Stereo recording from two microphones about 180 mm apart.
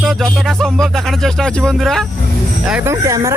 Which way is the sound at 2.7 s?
15° right (ahead or behind).